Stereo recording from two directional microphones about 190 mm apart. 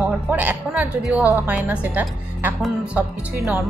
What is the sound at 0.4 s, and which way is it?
A woman's voice, 10° right (ahead or behind).